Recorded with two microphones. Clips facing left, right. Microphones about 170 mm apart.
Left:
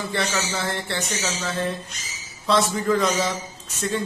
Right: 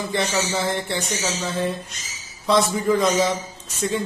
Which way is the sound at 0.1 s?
20° right (ahead or behind).